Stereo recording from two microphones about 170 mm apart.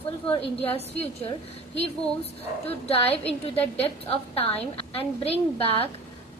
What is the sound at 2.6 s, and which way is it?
A woman's voice, 35° left (ahead or behind).